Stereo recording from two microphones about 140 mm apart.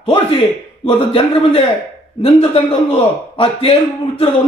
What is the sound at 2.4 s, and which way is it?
A man's voice, 45° left (ahead or behind).